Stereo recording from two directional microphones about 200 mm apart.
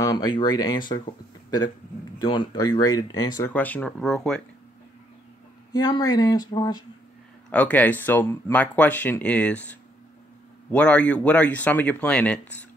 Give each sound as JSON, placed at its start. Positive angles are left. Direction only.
{"t": 0.0, "sound": "speech", "side_deg": 20}
{"t": 2.1, "sound": "speech", "side_deg": 20}
{"t": 5.7, "sound": "speech", "side_deg": 20}
{"t": 7.4, "sound": "speech", "side_deg": 5}